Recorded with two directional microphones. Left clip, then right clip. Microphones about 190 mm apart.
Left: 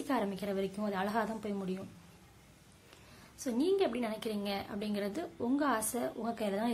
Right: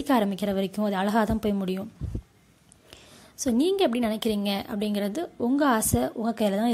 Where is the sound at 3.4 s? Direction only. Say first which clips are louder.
Right 8 dB; 40° right (ahead or behind).